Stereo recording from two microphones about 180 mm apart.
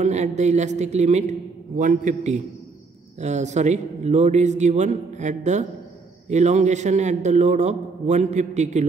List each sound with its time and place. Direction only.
0.0 s a man's voice: 40° right (ahead or behind)